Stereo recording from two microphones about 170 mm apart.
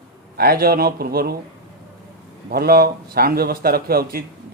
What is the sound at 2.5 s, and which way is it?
Speech, 65° right (ahead or behind).